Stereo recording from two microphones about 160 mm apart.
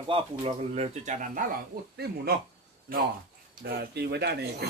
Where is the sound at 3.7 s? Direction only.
90° right.